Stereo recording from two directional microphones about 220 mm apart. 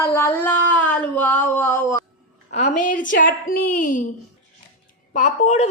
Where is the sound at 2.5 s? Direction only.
30° left (ahead or behind).